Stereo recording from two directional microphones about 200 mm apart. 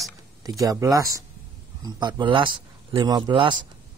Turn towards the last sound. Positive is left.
turn(degrees=-25)  # may be behind; listen again after turning